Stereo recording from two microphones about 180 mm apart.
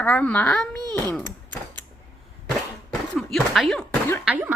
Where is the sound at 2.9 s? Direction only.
Centre (ahead or behind).